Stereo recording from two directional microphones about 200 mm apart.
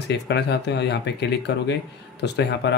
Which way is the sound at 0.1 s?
55° left (ahead or behind).